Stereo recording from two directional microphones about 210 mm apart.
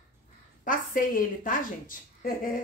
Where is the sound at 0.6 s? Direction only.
40° left (ahead or behind).